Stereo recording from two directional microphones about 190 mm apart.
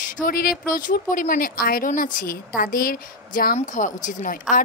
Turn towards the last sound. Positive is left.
turn(degrees=40)  # may be behind; listen again after turning